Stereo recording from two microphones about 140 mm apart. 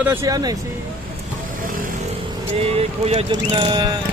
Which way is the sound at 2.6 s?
45° right (ahead or behind).